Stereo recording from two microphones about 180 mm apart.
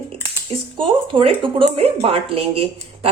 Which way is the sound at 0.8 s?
30° right (ahead or behind).